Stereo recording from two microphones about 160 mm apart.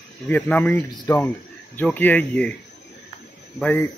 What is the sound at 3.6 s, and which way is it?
Speech, 15° left (ahead or behind).